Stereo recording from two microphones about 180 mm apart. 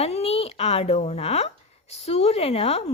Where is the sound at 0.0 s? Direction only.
35° left (ahead or behind).